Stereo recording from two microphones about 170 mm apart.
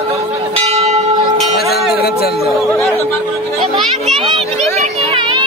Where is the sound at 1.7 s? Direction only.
70° left (ahead or behind).